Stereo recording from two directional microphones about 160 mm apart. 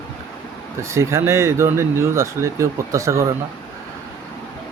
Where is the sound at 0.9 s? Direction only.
20° right (ahead or behind).